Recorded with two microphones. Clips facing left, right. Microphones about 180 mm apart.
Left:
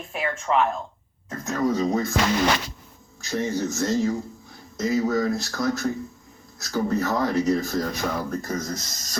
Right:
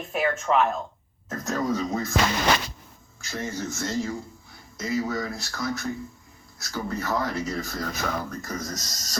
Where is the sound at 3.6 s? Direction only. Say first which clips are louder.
Left 5 dB; 40° left (ahead or behind).